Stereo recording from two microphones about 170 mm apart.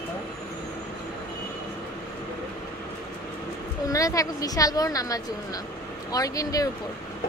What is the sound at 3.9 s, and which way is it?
A woman's voice, 20° left (ahead or behind).